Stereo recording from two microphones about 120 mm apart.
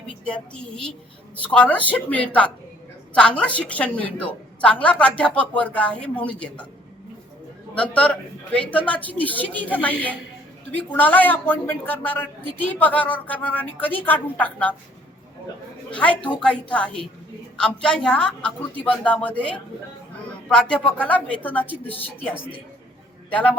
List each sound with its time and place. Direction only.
0.3 s a woman's voice: 10° left (ahead or behind)
7.8 s a woman's voice: 10° left (ahead or behind)
15.9 s a woman's voice: 10° left (ahead or behind)